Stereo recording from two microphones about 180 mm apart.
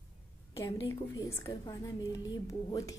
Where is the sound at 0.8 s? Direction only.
15° left (ahead or behind).